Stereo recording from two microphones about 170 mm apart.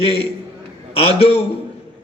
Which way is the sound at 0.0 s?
35° left (ahead or behind).